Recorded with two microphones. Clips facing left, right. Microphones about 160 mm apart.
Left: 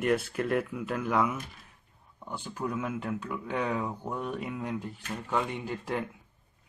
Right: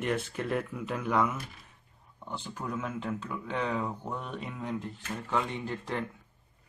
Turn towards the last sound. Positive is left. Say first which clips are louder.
# left 1 dB
turn(degrees=10)  # may be behind; listen again after turning